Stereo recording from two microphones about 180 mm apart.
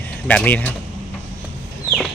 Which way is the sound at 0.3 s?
10° left (ahead or behind).